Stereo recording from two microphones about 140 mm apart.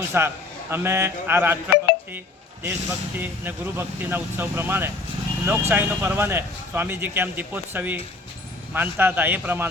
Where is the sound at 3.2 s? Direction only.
15° right (ahead or behind).